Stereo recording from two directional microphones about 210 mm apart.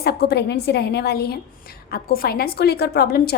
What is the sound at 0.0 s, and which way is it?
A woman's voice, 50° left (ahead or behind).